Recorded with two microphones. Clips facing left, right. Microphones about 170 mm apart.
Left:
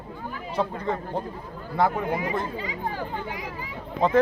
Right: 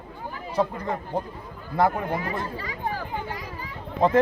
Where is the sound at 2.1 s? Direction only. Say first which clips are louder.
Left 2 dB; 15° left (ahead or behind).